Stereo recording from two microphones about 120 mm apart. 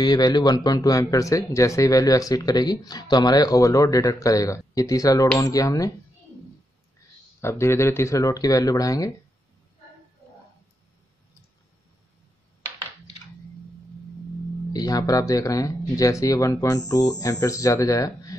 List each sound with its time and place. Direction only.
0.0 s speech: 35° left (ahead or behind)
7.4 s speech: 20° left (ahead or behind)
14.7 s speech: 30° left (ahead or behind)